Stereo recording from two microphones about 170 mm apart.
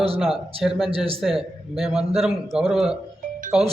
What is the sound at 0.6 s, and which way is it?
A man's voice, centre (ahead or behind).